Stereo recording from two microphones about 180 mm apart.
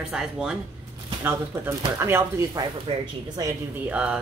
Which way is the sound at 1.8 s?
15° right (ahead or behind).